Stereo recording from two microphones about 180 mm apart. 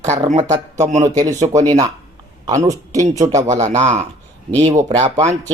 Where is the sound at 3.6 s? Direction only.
40° right (ahead or behind).